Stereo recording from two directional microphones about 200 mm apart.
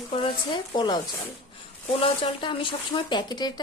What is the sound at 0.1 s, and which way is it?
Speech, 25° left (ahead or behind).